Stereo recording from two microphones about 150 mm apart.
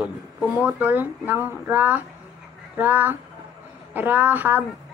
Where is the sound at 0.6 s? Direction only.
10° right (ahead or behind).